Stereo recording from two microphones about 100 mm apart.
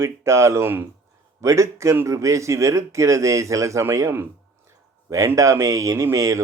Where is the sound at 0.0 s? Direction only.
30° right (ahead or behind).